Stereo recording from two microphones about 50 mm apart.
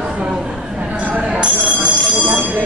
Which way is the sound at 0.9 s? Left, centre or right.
Right.